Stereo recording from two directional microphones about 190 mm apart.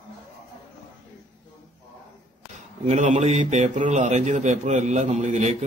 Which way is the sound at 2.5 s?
40° right (ahead or behind).